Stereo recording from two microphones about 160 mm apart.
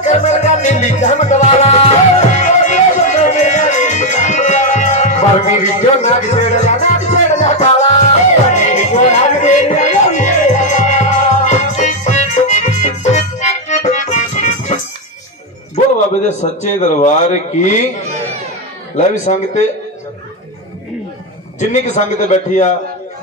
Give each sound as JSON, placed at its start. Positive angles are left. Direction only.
{"t": 0.0, "sound": "music", "side_deg": 45}
{"t": 16.3, "sound": "speech", "side_deg": 45}
{"t": 19.2, "sound": "speech", "side_deg": 45}
{"t": 21.5, "sound": "speech", "side_deg": 50}